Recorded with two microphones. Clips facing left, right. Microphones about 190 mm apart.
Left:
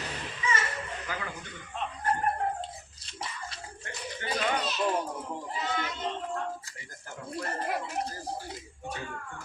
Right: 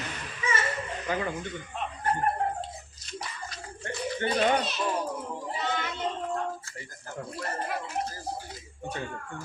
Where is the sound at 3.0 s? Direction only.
30° left (ahead or behind).